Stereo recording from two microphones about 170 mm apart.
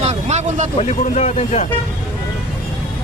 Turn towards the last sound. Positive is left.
turn(degrees=40)  # may be behind; listen again after turning